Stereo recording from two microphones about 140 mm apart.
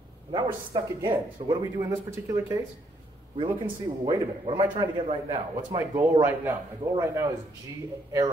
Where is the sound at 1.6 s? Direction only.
20° right (ahead or behind).